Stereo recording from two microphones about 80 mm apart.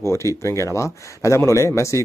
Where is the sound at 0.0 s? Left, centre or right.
Left.